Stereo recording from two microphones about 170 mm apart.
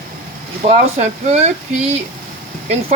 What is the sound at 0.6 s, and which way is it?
Speech, 40° right (ahead or behind).